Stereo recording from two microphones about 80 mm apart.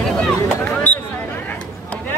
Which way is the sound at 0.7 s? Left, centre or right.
Left.